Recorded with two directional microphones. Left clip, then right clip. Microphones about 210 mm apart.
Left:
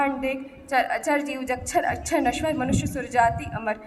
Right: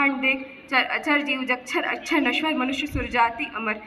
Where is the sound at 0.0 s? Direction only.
55° left (ahead or behind).